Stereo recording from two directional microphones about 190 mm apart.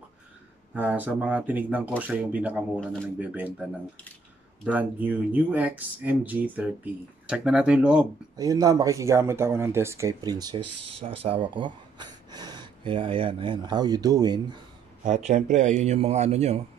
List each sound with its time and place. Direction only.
0.7 s speech: 10° right (ahead or behind)
2.8 s speech: 5° left (ahead or behind)
3.2 s speech: 10° right (ahead or behind)
8.4 s speech: 20° right (ahead or behind)
15.0 s a man's voice: 40° right (ahead or behind)